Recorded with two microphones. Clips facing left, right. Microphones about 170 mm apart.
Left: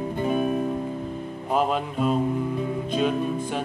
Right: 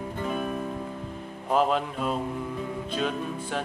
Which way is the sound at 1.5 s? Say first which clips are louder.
Even; 5° left (ahead or behind).